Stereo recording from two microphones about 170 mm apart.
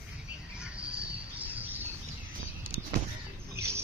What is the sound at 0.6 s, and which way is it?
Bird, 5° right (ahead or behind).